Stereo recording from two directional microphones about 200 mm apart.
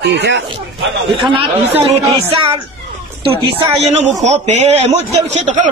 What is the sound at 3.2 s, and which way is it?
A woman's voice, 25° right (ahead or behind).